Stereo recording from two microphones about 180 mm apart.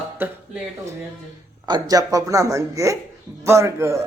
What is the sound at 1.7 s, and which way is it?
Speech, 20° right (ahead or behind).